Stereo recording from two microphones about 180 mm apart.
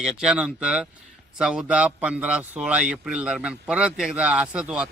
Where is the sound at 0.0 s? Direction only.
5° right (ahead or behind).